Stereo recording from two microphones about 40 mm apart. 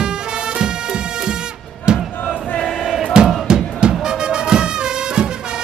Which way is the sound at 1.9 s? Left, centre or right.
Right.